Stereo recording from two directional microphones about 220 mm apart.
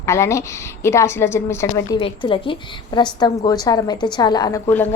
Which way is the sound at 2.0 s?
25° left (ahead or behind).